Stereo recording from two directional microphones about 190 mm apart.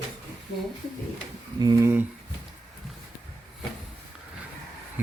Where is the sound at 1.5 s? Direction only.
20° right (ahead or behind).